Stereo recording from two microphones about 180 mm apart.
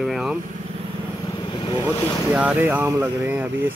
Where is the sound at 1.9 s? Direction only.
10° left (ahead or behind).